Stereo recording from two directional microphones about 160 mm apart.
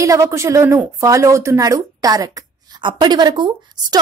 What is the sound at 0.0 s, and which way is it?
A woman's voice, 20° right (ahead or behind).